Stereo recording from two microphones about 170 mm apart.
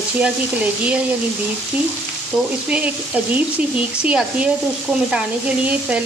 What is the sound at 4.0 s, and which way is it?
Frying, 5° right (ahead or behind).